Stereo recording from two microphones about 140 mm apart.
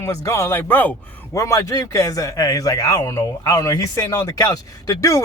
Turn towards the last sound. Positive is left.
turn(degrees=25)  # may be behind; listen again after turning